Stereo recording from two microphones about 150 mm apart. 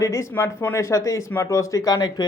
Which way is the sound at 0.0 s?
20° left (ahead or behind).